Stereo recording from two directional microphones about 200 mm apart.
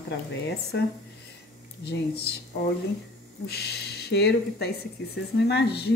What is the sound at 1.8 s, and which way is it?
Speech, 55° left (ahead or behind).